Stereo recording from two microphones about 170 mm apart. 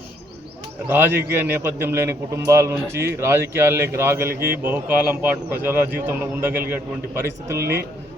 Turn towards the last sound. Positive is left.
turn(degrees=-15)  # may be behind; listen again after turning